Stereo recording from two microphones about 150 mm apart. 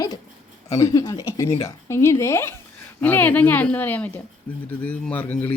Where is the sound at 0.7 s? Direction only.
20° left (ahead or behind).